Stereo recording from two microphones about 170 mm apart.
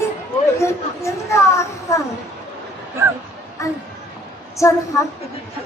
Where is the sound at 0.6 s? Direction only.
15° left (ahead or behind).